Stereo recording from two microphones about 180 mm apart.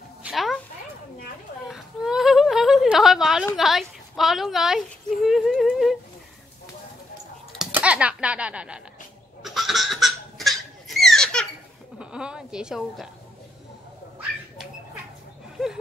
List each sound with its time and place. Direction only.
0.2 s a sound: centre (ahead or behind)
1.7 s a sound: centre (ahead or behind)
3.5 s speech: centre (ahead or behind)
7.5 s speech: 5° right (ahead or behind)
9.4 s laughter: centre (ahead or behind)
12.0 s a woman's voice: 5° right (ahead or behind)